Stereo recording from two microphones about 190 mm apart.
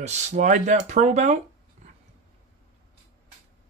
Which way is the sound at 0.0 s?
35° right (ahead or behind).